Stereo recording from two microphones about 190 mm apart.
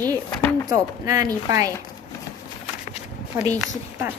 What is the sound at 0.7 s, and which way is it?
Speech, 20° right (ahead or behind).